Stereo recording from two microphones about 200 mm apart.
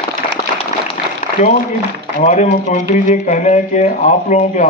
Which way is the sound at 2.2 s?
35° left (ahead or behind).